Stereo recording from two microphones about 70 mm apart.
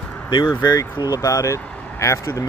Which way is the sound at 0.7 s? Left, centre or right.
Left.